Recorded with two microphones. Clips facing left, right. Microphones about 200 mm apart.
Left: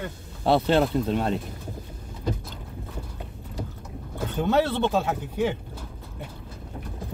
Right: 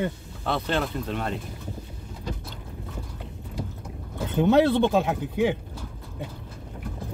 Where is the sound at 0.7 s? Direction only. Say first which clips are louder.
Left 6 dB; 35° left (ahead or behind).